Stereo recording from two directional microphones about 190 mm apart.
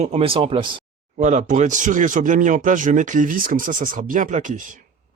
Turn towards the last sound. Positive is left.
turn(degrees=-45)  # may be behind; listen again after turning